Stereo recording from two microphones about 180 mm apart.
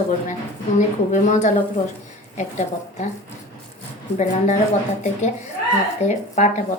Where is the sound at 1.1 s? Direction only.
45° left (ahead or behind).